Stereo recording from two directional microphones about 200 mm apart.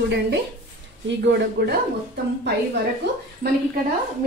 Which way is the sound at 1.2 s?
60° right (ahead or behind).